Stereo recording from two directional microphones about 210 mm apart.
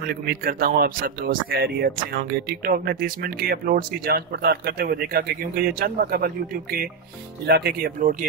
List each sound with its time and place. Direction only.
0.0 s speech: 45° right (ahead or behind)